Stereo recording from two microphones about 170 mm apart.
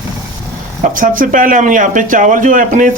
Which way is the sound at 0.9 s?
55° right (ahead or behind).